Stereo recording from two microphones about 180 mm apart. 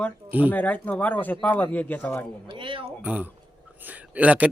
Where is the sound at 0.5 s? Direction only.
10° left (ahead or behind).